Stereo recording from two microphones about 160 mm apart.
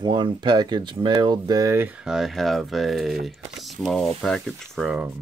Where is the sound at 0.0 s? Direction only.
30° right (ahead or behind); by 5.1 s 5° right (ahead or behind).